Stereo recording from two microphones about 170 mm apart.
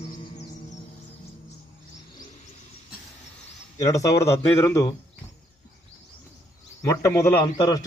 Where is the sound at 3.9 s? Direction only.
20° left (ahead or behind).